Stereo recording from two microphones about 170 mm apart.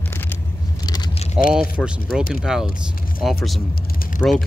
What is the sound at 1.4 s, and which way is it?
Speech, 5° right (ahead or behind).